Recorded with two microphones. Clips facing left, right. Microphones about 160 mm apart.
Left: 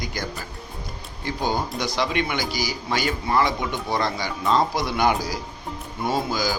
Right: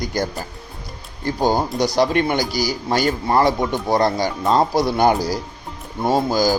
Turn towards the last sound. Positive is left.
turn(degrees=-40)  # may be behind; listen again after turning